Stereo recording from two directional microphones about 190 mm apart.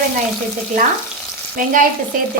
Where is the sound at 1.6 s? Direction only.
45° right (ahead or behind).